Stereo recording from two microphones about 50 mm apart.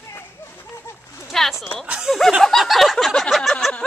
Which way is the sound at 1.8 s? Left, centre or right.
Centre.